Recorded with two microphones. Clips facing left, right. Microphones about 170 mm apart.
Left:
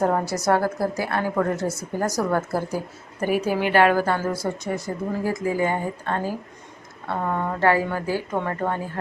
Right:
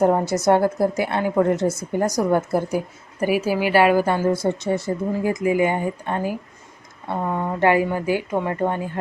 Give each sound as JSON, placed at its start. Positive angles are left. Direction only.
{"t": 0.0, "sound": "a woman's voice", "side_deg": -15}
{"t": 4.0, "sound": "a woman's voice", "side_deg": -20}